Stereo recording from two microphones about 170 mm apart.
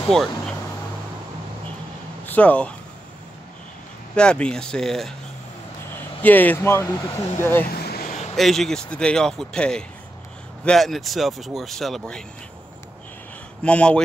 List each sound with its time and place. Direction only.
0.1 s speech: centre (ahead or behind)
2.2 s speech: 10° left (ahead or behind)
4.1 s speech: 5° left (ahead or behind)
7.7 s a sound: 65° left (ahead or behind)
8.4 s speech: centre (ahead or behind)
13.7 s speech: 5° left (ahead or behind)